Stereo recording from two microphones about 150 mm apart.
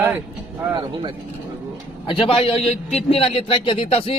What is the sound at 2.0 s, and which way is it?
A man's voice, 35° left (ahead or behind).